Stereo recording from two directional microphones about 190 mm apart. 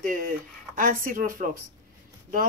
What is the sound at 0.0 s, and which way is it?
Speech, 45° right (ahead or behind).